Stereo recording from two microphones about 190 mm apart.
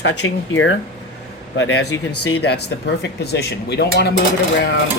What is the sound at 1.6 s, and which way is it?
Speech, 90° left.